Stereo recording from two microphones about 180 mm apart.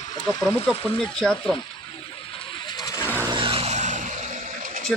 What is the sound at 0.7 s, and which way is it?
Speech, 30° left (ahead or behind).